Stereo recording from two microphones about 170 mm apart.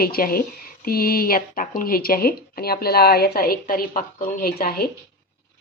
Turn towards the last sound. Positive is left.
turn(degrees=60)  # may be behind; listen again after turning